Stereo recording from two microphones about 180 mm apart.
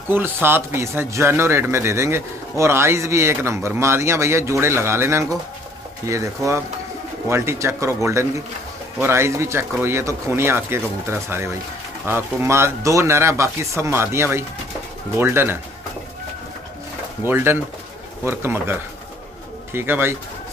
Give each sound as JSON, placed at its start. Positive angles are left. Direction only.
{"t": 0.1, "sound": "a man's voice", "side_deg": -10}
{"t": 17.2, "sound": "a man's voice", "side_deg": -10}